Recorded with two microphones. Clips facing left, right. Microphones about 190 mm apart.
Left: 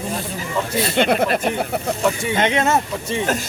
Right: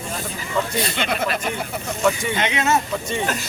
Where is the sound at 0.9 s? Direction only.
50° left (ahead or behind).